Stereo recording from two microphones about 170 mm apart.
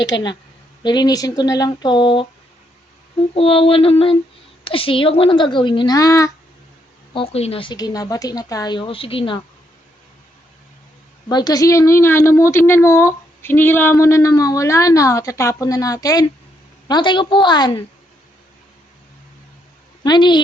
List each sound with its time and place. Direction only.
0.1 s speech: 30° left (ahead or behind)
3.3 s a sound: 35° left (ahead or behind)
4.6 s speech: 30° left (ahead or behind)
7.1 s speech: 35° left (ahead or behind)
11.3 s a woman's voice: 25° left (ahead or behind)
20.1 s speech: 25° left (ahead or behind)